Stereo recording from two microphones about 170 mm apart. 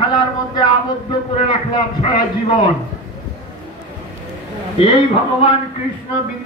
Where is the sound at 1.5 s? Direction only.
30° left (ahead or behind).